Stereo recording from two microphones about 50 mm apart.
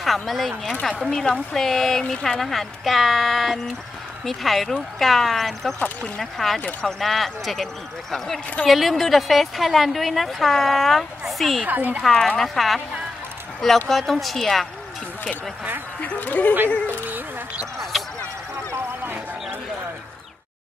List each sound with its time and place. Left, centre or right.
0.0 s a woman's voice: centre
8.6 s a woman's voice: centre
11.6 s a woman's voice: right
12.0 s a woman's voice: centre
16.0 s speech: left
17.9 s a sound: centre